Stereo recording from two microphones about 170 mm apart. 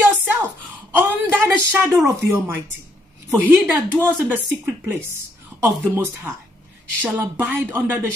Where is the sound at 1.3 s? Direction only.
10° right (ahead or behind).